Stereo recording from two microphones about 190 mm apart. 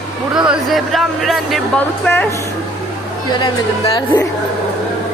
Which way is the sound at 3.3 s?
25° left (ahead or behind).